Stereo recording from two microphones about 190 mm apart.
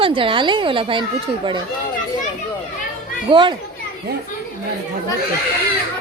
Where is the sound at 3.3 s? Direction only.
25° right (ahead or behind).